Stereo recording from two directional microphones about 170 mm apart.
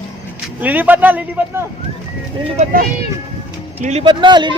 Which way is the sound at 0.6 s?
10° right (ahead or behind).